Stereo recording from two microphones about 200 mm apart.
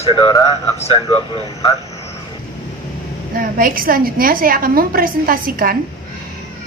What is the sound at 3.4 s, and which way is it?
A woman's voice, 45° right (ahead or behind).